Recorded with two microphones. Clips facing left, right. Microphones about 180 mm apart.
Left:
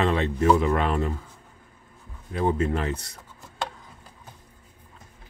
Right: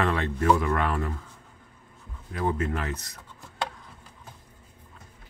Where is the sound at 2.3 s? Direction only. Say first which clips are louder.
Left 4 dB; 25° left (ahead or behind).